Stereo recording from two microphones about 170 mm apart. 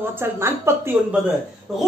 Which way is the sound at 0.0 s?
15° right (ahead or behind).